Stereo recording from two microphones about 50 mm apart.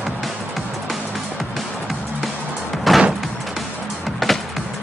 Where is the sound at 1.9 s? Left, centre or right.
Centre.